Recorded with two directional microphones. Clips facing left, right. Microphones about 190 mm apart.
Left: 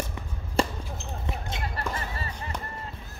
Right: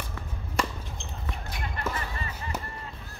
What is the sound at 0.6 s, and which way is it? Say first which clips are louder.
Basketball bounce: left 5 dB; 30° left (ahead or behind).